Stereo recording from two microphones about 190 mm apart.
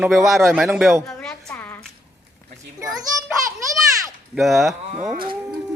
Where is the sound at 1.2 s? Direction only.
5° left (ahead or behind).